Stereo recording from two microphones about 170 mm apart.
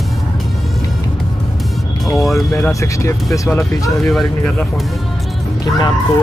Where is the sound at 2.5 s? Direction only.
15° left (ahead or behind).